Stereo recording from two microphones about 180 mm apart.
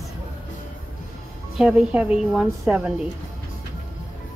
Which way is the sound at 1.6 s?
5° right (ahead or behind).